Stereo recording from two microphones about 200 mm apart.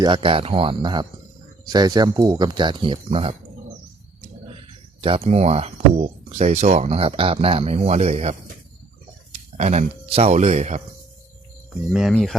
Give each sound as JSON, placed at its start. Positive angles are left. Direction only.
{"t": 0.0, "sound": "speech", "side_deg": -25}
{"t": 4.9, "sound": "speech", "side_deg": -30}
{"t": 11.7, "sound": "speech", "side_deg": 0}